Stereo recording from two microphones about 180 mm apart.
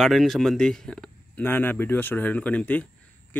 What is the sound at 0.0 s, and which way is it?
A man's voice, centre (ahead or behind).